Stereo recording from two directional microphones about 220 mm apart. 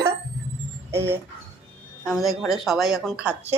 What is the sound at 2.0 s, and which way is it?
A woman's voice, centre (ahead or behind).